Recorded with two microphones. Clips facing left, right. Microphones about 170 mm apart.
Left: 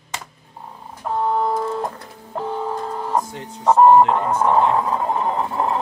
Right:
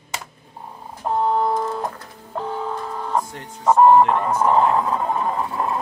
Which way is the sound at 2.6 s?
25° left (ahead or behind).